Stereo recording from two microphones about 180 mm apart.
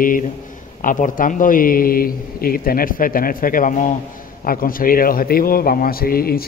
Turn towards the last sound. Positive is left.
turn(degrees=55)  # may be behind; listen again after turning